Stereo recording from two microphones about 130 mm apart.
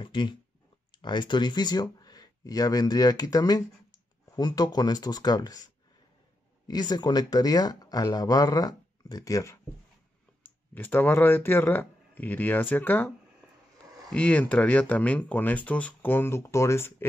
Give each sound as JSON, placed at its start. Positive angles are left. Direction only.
{"t": 0.0, "sound": "speech", "side_deg": 40}
{"t": 6.7, "sound": "speech", "side_deg": 30}
{"t": 10.7, "sound": "speech", "side_deg": 15}
{"t": 14.1, "sound": "speech", "side_deg": 10}